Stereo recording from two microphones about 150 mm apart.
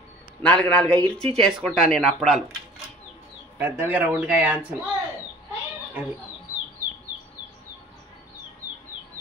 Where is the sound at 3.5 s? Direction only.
15° right (ahead or behind).